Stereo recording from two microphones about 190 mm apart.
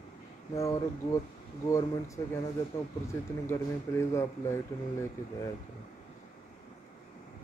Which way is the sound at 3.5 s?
15° left (ahead or behind).